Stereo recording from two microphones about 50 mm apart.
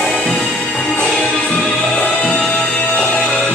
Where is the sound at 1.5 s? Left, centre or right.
Centre.